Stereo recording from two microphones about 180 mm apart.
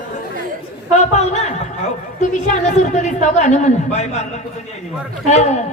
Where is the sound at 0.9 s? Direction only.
40° left (ahead or behind).